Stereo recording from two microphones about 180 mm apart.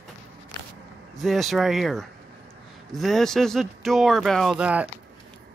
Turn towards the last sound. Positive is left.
turn(degrees=-5)  # may be behind; listen again after turning